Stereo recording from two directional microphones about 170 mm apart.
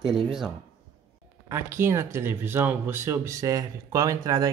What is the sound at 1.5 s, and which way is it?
Speech, 15° right (ahead or behind).